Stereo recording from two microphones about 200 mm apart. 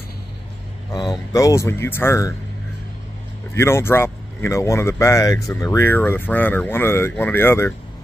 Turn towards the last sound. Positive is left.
turn(degrees=10)  # may be behind; listen again after turning